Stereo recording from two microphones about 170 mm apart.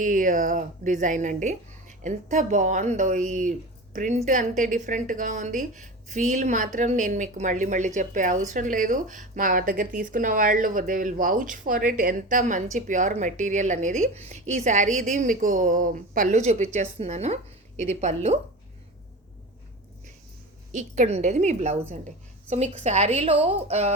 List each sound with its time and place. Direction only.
0.0 s a woman's voice: 50° right (ahead or behind)
20.7 s a woman's voice: 45° right (ahead or behind)